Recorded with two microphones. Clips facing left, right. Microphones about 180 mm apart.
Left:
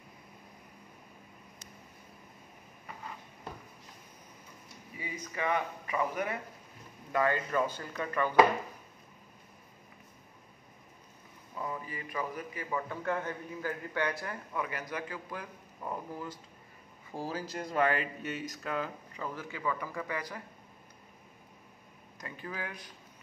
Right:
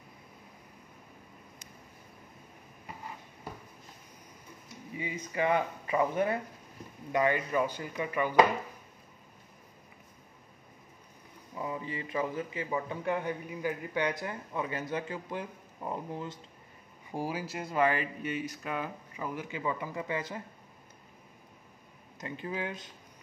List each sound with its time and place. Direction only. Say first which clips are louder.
4.9 s speech: right 5 dB; 25° right (ahead or behind)
7.1 s speech: right 2 dB; 15° right (ahead or behind)
11.5 s a man's voice: right 3 dB; 20° right (ahead or behind)
22.2 s a man's voice: right 5 dB; 25° right (ahead or behind)